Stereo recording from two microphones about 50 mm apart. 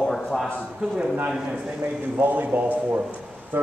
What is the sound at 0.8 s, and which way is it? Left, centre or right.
Speech, centre.